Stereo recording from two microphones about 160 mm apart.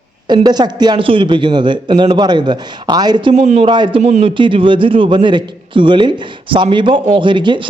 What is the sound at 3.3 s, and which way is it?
Speech, 45° right (ahead or behind).